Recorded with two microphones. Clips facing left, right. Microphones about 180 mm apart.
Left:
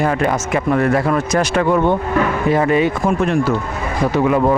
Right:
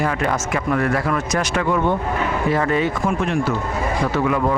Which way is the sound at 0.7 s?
25° left (ahead or behind).